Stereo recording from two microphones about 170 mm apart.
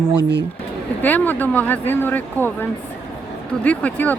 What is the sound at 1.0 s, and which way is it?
Speech, 10° left (ahead or behind).